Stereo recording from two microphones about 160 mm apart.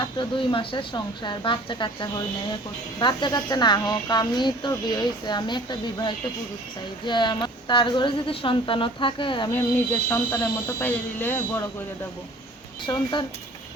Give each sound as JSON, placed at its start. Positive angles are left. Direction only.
{"t": 0.0, "sound": "a woman's voice", "side_deg": 30}
{"t": 9.6, "sound": "speech", "side_deg": 10}
{"t": 12.8, "sound": "speech", "side_deg": 30}